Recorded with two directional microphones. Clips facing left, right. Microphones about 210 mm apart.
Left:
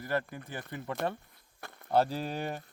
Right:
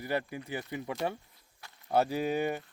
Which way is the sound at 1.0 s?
55° left (ahead or behind).